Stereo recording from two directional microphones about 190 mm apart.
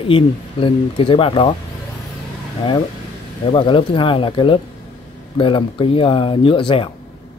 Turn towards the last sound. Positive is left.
turn(degrees=25)  # may be behind; listen again after turning